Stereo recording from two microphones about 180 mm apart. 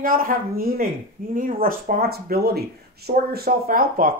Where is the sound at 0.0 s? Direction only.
55° right (ahead or behind).